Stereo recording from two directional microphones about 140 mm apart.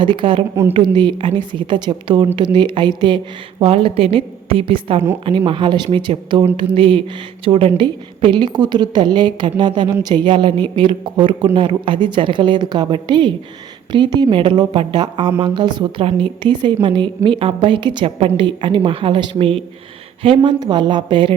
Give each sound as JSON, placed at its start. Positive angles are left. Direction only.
{"t": 0.0, "sound": "a woman's voice", "side_deg": -35}